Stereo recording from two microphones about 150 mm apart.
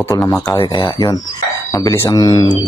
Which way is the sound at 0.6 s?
30° left (ahead or behind).